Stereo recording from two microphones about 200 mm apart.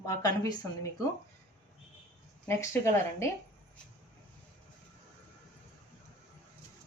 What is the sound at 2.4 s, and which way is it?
Speech, 15° left (ahead or behind).